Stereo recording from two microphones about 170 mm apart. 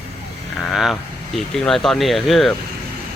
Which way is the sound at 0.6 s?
Centre (ahead or behind).